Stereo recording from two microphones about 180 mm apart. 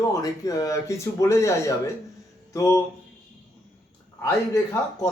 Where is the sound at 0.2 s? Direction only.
20° left (ahead or behind).